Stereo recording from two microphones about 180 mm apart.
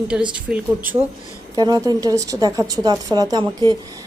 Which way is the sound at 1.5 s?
20° right (ahead or behind).